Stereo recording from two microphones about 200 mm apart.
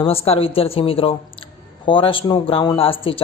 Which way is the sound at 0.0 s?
30° left (ahead or behind).